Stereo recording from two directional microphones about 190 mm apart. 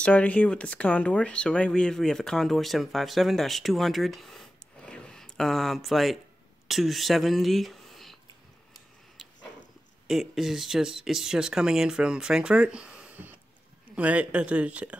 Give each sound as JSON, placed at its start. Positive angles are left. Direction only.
{"t": 0.0, "sound": "speech", "side_deg": 5}
{"t": 10.0, "sound": "speech", "side_deg": 0}